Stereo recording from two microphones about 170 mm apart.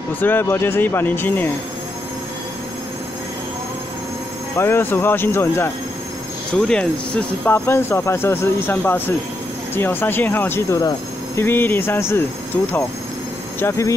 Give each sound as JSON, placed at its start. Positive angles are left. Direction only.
{"t": 0.2, "sound": "speech", "side_deg": 10}
{"t": 4.6, "sound": "speech", "side_deg": 15}
{"t": 6.7, "sound": "speech", "side_deg": 5}
{"t": 13.6, "sound": "speech", "side_deg": 15}